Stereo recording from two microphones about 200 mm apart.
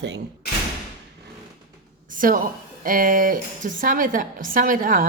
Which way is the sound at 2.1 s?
45° right (ahead or behind).